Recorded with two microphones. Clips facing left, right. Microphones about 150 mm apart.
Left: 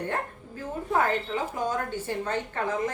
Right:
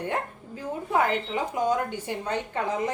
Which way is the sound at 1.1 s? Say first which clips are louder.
Right 1 dB; 15° right (ahead or behind).